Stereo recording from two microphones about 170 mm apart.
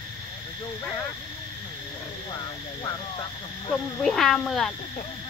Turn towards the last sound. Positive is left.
turn(degrees=5)  # may be behind; listen again after turning